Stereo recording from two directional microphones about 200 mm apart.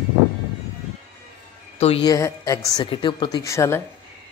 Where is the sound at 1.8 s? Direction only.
25° left (ahead or behind).